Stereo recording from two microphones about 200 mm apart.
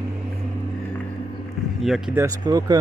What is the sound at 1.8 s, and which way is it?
Speech, centre (ahead or behind).